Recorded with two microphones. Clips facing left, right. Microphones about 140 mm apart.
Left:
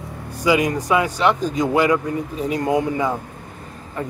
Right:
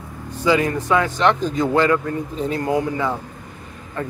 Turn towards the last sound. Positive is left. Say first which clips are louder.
# even
turn(degrees=15)  # may be behind; listen again after turning